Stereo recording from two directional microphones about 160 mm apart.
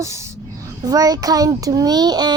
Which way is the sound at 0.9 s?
25° right (ahead or behind).